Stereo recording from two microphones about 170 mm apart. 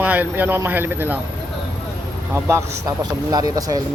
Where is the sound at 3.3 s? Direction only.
20° right (ahead or behind).